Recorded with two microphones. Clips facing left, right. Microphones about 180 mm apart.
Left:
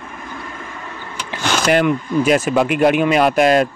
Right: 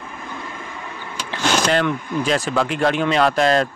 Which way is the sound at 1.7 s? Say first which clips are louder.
Left 4 dB; 15° left (ahead or behind).